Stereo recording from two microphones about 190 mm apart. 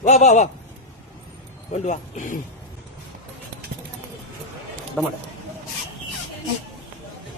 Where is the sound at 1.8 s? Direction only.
40° left (ahead or behind).